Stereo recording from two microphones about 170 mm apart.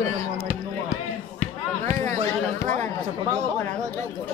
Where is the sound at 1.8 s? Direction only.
45° right (ahead or behind).